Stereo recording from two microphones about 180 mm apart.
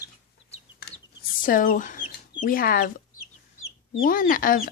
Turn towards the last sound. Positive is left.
turn(degrees=50)  # may be behind; listen again after turning